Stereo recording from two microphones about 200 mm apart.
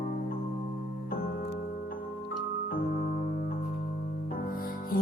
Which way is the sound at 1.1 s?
45° left (ahead or behind).